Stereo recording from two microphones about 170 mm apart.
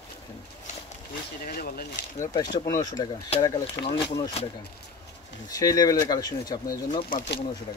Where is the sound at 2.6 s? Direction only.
20° left (ahead or behind).